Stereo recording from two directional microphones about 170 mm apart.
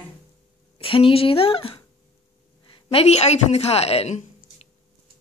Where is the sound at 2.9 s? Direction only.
35° left (ahead or behind).